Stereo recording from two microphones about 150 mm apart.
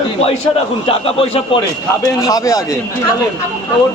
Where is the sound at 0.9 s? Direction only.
40° left (ahead or behind).